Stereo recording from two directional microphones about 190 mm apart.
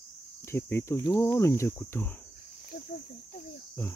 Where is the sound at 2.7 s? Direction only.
50° left (ahead or behind).